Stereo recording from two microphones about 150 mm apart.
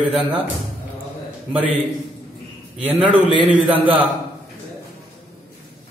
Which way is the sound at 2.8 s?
10° right (ahead or behind).